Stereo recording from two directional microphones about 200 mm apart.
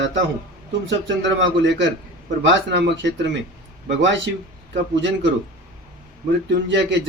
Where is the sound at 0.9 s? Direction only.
65° right (ahead or behind).